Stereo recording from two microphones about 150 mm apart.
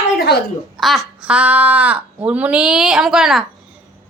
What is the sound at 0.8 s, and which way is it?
A woman's voice, centre (ahead or behind).